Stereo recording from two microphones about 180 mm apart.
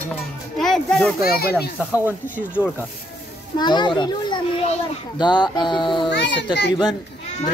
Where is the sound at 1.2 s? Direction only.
55° left (ahead or behind).